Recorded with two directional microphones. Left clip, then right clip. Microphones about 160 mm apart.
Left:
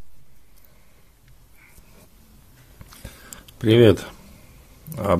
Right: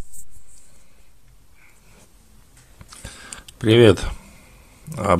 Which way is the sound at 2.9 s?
5° right (ahead or behind).